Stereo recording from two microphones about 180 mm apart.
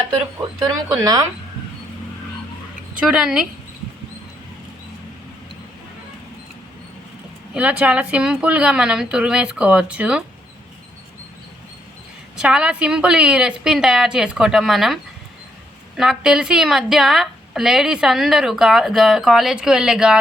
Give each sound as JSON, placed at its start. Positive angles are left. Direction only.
{"t": 0.6, "sound": "speech", "side_deg": -20}
{"t": 2.9, "sound": "a woman's voice", "side_deg": -5}
{"t": 7.5, "sound": "a woman's voice", "side_deg": -5}
{"t": 12.4, "sound": "a woman's voice", "side_deg": -5}
{"t": 16.0, "sound": "a woman's voice", "side_deg": -5}